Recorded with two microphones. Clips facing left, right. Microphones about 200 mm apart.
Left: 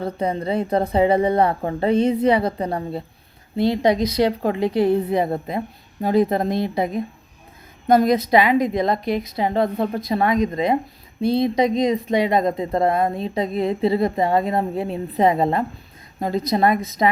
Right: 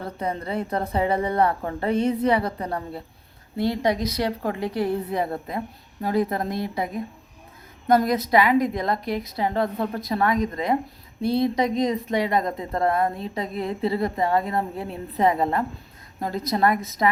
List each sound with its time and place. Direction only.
0.0 s a woman's voice: 15° left (ahead or behind)
4.0 s a woman's voice: 20° left (ahead or behind)